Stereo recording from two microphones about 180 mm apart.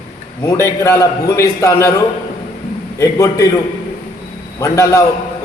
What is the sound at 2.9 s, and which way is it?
Speech, 15° left (ahead or behind).